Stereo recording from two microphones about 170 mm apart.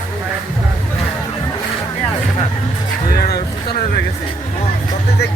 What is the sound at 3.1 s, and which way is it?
Music, 65° left (ahead or behind).